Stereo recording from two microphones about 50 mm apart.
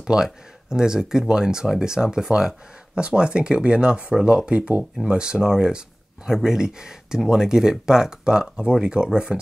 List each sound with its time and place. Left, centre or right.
0.0 s speech: centre